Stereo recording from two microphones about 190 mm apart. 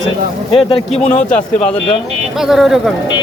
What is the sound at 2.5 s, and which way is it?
Speech, centre (ahead or behind).